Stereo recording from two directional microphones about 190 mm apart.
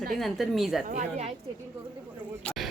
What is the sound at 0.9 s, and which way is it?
Speech, 45° right (ahead or behind).